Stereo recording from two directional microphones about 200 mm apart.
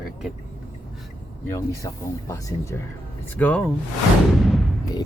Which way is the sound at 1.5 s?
15° left (ahead or behind).